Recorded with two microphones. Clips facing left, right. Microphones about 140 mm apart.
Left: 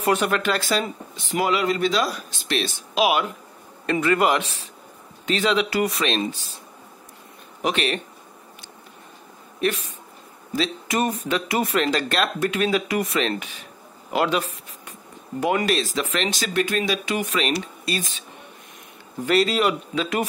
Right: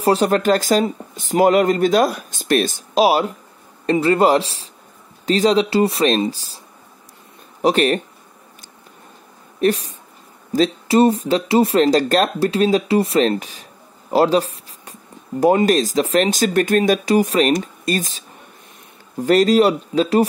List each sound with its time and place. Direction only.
0.0 s speech: 35° right (ahead or behind)
7.6 s speech: 45° right (ahead or behind)
9.6 s speech: 35° right (ahead or behind)
11.0 s speech: 30° right (ahead or behind)
14.1 s a sound: 35° right (ahead or behind)
15.4 s speech: 40° right (ahead or behind)
19.2 s speech: 40° right (ahead or behind)